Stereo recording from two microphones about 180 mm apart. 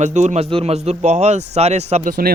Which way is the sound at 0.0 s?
40° right (ahead or behind).